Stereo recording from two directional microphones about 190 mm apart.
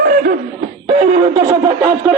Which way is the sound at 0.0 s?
50° right (ahead or behind).